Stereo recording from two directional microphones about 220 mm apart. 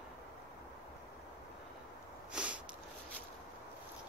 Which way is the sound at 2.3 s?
5° right (ahead or behind).